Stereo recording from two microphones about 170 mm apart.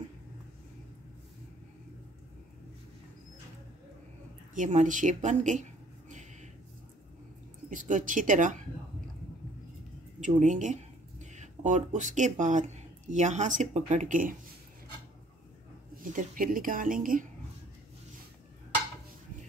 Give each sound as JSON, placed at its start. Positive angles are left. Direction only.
{"t": 4.6, "sound": "a sound", "side_deg": -50}
{"t": 7.7, "sound": "speech", "side_deg": -50}
{"t": 10.2, "sound": "speech", "side_deg": -45}
{"t": 16.0, "sound": "speech", "side_deg": -50}